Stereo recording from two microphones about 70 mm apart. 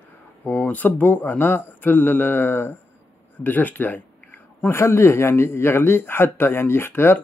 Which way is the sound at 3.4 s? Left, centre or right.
Left.